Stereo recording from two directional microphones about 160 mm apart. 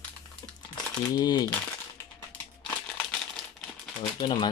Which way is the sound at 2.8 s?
5° left (ahead or behind).